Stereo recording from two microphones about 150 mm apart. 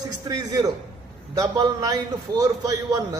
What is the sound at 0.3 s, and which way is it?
A man's voice, 25° right (ahead or behind).